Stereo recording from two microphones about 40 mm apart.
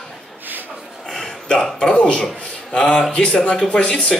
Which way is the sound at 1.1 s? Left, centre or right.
Centre.